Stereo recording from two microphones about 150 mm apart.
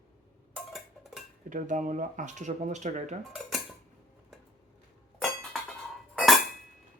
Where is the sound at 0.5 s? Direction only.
5° right (ahead or behind).